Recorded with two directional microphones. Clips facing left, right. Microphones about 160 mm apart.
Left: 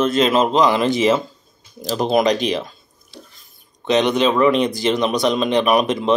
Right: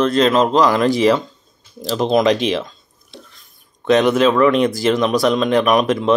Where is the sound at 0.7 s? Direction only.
Centre (ahead or behind).